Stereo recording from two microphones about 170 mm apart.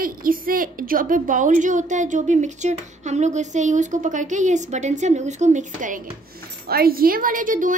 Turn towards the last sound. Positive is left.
turn(degrees=-50)  # may be behind; listen again after turning